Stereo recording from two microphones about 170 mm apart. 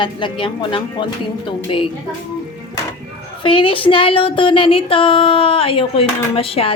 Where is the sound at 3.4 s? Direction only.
30° left (ahead or behind).